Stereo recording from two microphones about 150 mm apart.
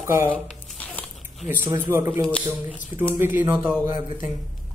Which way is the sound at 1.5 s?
15° right (ahead or behind).